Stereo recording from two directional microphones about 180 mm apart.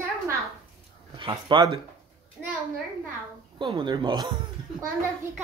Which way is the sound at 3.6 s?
25° right (ahead or behind).